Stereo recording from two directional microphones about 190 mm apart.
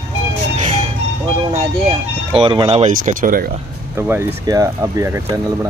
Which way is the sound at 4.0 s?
10° right (ahead or behind).